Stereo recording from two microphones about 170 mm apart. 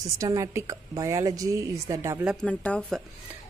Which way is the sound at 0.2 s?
20° right (ahead or behind).